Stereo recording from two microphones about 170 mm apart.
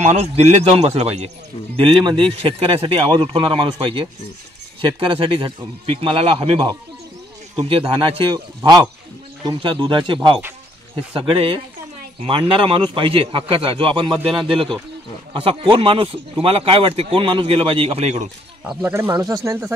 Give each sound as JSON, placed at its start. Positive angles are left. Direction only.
{"t": 0.0, "sound": "speech", "side_deg": -40}
{"t": 18.7, "sound": "speech", "side_deg": -10}